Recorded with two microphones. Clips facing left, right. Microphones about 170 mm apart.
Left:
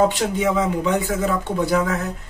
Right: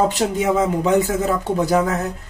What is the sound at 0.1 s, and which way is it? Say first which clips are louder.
A woman's voice: right 2 dB; 40° right (ahead or behind).